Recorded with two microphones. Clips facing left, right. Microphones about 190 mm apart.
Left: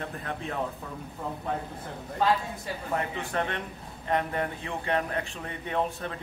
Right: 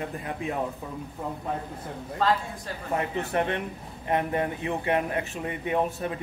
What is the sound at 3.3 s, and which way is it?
Speech, 20° right (ahead or behind).